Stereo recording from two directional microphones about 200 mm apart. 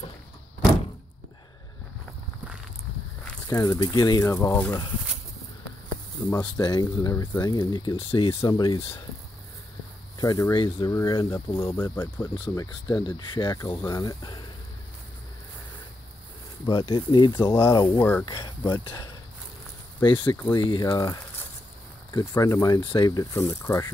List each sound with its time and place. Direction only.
3.4 s speech: 15° left (ahead or behind)
6.3 s speech: 20° left (ahead or behind)
10.1 s speech: 20° left (ahead or behind)
11.9 s speech: 10° left (ahead or behind)
12.8 s speech: 25° left (ahead or behind)
16.6 s speech: 20° left (ahead or behind)
18.2 s speech: 20° left (ahead or behind)